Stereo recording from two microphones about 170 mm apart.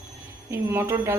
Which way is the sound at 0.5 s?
15° right (ahead or behind).